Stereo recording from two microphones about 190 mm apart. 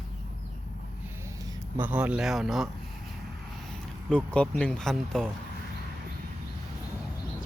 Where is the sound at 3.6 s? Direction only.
5° left (ahead or behind).